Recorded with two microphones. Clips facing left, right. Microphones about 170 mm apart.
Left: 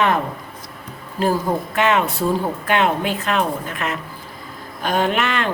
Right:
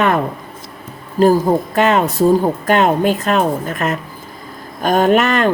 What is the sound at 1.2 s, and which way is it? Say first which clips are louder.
A woman's voice: right 8 dB; 40° right (ahead or behind).